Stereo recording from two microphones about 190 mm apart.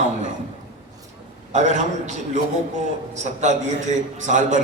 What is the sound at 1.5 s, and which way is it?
Speech, 40° right (ahead or behind).